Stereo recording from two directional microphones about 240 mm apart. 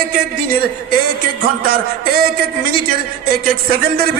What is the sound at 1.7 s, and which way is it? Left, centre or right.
A man's voice, right.